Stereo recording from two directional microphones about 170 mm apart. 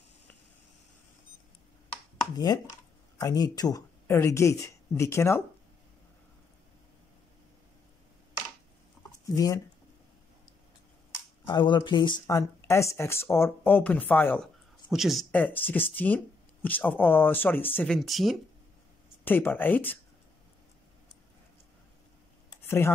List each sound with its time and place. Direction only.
2.3 s speech: 25° left (ahead or behind)
9.2 s speech: 20° left (ahead or behind)
11.4 s speech: 25° left (ahead or behind); by 14.5 s 10° left (ahead or behind)
14.9 s speech: centre (ahead or behind)
15.3 s speech: 10° left (ahead or behind)
19.2 s speech: 10° left (ahead or behind)
22.6 s a sound: 15° left (ahead or behind)